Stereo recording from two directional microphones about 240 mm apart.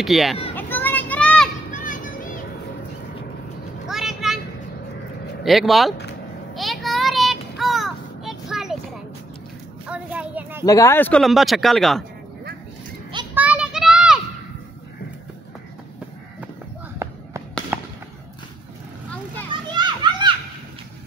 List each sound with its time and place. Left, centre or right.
0.0 s speech: centre
0.6 s children playing: centre
1.7 s children playing: left
3.9 s a sound: centre
5.4 s speech: centre
6.5 s child singing: centre
9.8 s a sound: centre
10.6 s speech: centre
13.1 s children playing: centre
13.4 s a sound: centre
17.0 s a sound: centre
19.7 s children playing: centre